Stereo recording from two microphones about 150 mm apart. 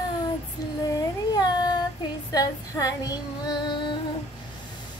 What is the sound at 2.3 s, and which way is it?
Female singing, 25° left (ahead or behind).